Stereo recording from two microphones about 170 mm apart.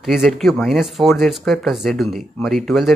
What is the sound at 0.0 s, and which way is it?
Speech, centre (ahead or behind).